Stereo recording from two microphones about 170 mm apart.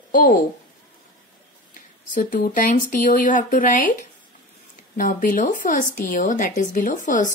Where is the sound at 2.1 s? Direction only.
50° left (ahead or behind).